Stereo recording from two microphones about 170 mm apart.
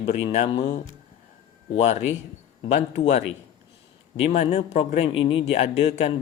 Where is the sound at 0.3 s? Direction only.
35° left (ahead or behind).